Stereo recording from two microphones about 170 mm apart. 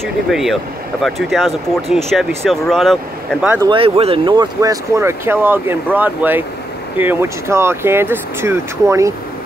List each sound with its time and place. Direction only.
0.0 s speech: centre (ahead or behind)
3.6 s speech: 30° right (ahead or behind); by 9.1 s 15° right (ahead or behind)